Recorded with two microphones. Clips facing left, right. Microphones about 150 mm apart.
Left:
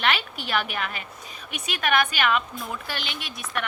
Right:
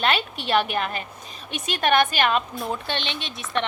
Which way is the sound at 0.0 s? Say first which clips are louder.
Right 2 dB; 30° right (ahead or behind).